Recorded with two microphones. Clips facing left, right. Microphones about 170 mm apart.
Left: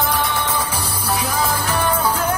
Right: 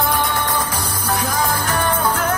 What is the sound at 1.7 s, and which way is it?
Music, 10° left (ahead or behind).